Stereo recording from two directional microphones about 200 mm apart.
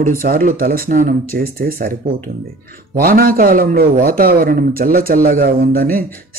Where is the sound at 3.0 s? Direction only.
45° right (ahead or behind).